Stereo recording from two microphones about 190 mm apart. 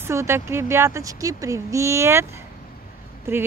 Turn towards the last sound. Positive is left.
turn(degrees=-10)  # may be behind; listen again after turning